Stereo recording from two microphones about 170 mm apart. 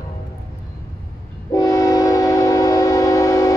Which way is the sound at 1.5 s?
20° left (ahead or behind).